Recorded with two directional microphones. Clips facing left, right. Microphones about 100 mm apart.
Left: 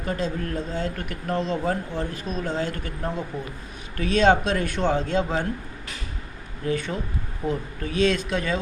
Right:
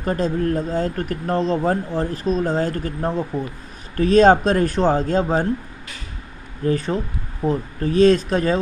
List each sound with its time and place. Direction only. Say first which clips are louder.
0.0 s speech: right 7 dB; 40° right (ahead or behind)
6.6 s speech: right 6 dB; 35° right (ahead or behind)